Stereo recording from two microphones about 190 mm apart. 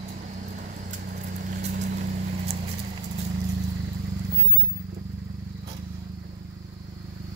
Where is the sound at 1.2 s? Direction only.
40° right (ahead or behind).